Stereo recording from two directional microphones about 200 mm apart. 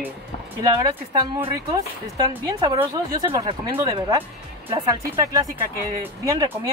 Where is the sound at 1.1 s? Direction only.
20° right (ahead or behind).